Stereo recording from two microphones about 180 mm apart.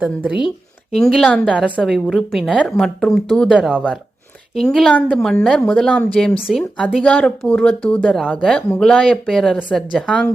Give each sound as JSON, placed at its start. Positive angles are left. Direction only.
{"t": 0.0, "sound": "speech", "side_deg": -5}
{"t": 0.3, "sound": "a sound", "side_deg": 30}
{"t": 0.9, "sound": "speech", "side_deg": 0}